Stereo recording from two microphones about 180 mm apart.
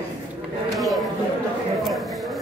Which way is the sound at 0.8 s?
Centre (ahead or behind).